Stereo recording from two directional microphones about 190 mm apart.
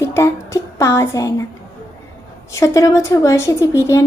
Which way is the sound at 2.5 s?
15° left (ahead or behind).